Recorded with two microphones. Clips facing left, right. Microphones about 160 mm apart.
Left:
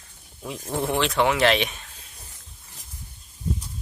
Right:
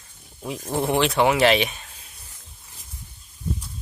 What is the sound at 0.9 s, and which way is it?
Speech, 10° right (ahead or behind).